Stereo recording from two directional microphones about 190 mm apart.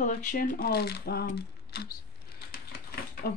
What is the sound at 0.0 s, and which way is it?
Speech, 45° left (ahead or behind).